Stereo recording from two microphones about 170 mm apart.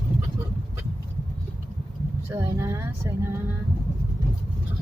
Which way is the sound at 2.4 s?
15° right (ahead or behind).